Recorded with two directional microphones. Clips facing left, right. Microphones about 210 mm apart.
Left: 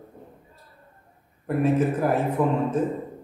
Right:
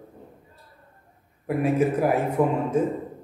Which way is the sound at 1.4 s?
10° right (ahead or behind).